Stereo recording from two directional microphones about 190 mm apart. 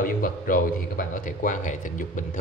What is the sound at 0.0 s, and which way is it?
Speech, 45° left (ahead or behind).